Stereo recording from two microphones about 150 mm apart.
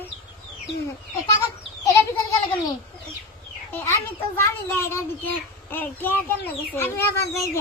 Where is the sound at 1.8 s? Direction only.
20° left (ahead or behind).